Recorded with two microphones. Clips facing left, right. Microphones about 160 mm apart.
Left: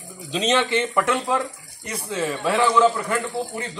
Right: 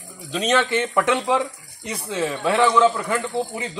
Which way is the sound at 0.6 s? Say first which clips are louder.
Right 1 dB; 10° right (ahead or behind).